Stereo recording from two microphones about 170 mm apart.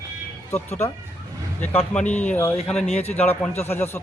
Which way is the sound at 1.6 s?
10° left (ahead or behind).